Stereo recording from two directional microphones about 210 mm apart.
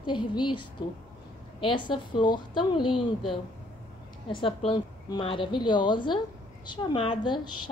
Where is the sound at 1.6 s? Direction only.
20° left (ahead or behind).